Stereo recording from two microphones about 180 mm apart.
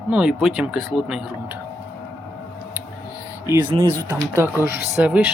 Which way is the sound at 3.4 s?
15° right (ahead or behind).